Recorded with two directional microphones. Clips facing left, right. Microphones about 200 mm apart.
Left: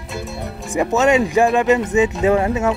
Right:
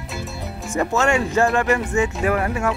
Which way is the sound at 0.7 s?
15° left (ahead or behind).